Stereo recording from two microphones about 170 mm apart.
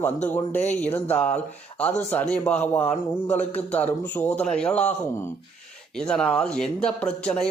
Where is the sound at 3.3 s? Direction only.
40° left (ahead or behind).